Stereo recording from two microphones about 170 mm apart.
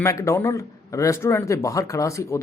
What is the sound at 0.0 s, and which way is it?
Speech, 15° left (ahead or behind).